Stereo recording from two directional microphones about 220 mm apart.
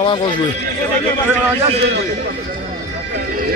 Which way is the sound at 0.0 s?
20° left (ahead or behind).